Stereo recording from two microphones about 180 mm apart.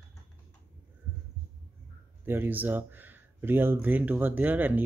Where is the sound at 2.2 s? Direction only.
10° right (ahead or behind).